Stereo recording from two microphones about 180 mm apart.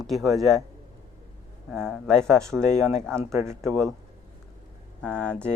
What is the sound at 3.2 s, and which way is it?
Speech, 15° right (ahead or behind).